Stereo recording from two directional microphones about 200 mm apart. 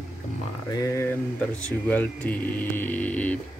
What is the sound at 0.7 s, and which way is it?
Speech, 15° left (ahead or behind).